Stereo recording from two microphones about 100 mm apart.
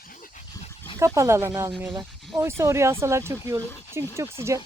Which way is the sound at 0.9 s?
30° right (ahead or behind).